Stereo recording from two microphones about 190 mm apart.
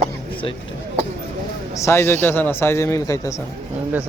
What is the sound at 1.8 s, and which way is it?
A man's voice, 15° left (ahead or behind).